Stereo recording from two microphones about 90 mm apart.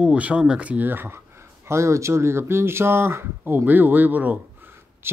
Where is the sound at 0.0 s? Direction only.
15° right (ahead or behind).